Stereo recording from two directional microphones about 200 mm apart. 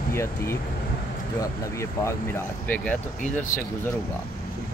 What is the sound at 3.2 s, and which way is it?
Speech, 40° left (ahead or behind).